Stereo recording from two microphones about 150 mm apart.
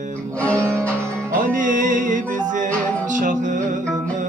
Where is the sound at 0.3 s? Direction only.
10° left (ahead or behind).